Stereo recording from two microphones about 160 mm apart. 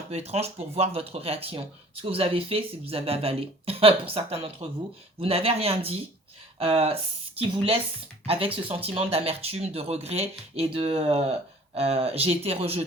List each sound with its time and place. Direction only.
0.1 s speech: 40° right (ahead or behind)